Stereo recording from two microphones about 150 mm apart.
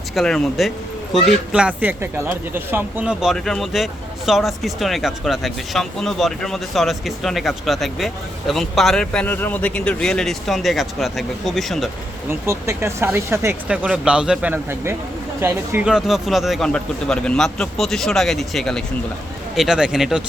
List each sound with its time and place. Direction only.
0.1 s speech: centre (ahead or behind)
12.3 s speech: 15° right (ahead or behind)
13.7 s speech: 5° right (ahead or behind)
15.9 s speech: 5° right (ahead or behind)